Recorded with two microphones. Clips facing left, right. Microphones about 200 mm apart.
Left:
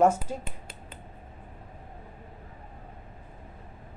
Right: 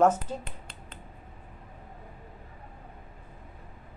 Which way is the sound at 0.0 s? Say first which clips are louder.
Even; 10° left (ahead or behind).